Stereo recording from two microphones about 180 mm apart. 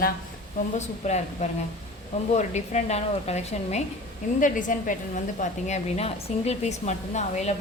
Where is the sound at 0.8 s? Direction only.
40° left (ahead or behind).